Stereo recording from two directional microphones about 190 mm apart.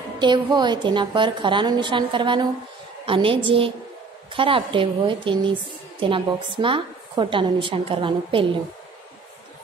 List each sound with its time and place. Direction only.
0.2 s a woman's voice: 25° right (ahead or behind)